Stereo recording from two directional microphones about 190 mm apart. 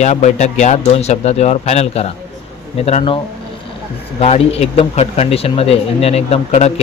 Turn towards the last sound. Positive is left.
turn(degrees=35)  # may be behind; listen again after turning